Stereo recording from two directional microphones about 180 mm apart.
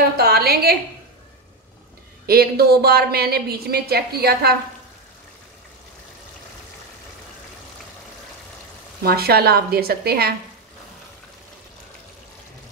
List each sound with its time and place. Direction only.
0.2 s a woman's voice: 60° right (ahead or behind)
2.2 s a woman's voice: 60° right (ahead or behind)
9.0 s a woman's voice: 60° right (ahead or behind)